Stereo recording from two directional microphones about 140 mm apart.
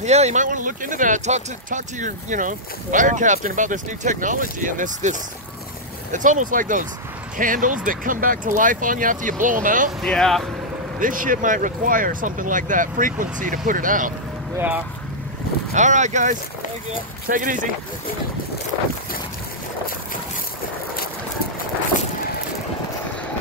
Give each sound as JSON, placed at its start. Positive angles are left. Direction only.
{"t": 0.0, "sound": "speech", "side_deg": -55}
{"t": 6.1, "sound": "speech", "side_deg": -65}
{"t": 10.0, "sound": "speech", "side_deg": 5}
{"t": 11.0, "sound": "speech", "side_deg": -75}
{"t": 15.7, "sound": "speech", "side_deg": -60}
{"t": 17.3, "sound": "speech", "side_deg": -70}